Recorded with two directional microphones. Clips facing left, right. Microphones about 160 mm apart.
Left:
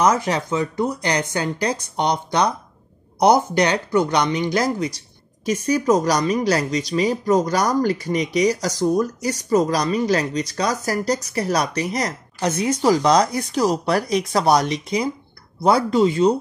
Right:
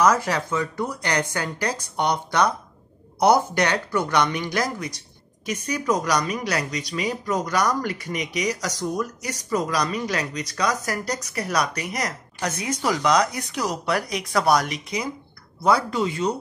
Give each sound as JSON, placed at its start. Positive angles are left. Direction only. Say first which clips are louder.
{"t": 0.0, "sound": "speech", "louder": "left 2 dB", "side_deg": 25}